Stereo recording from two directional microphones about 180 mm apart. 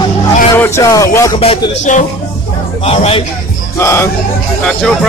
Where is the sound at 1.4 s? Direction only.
40° left (ahead or behind).